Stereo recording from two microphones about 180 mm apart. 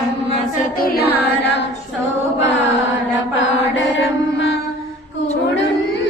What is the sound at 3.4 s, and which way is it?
Mantra, 90° left.